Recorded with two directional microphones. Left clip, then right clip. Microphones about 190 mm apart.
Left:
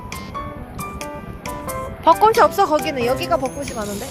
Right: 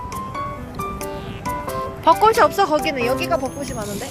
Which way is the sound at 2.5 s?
25° left (ahead or behind).